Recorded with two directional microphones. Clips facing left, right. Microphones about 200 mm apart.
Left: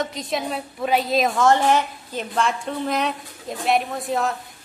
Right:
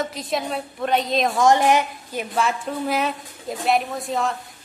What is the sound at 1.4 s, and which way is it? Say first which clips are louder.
A woman's voice: right 2 dB; 15° right (ahead or behind).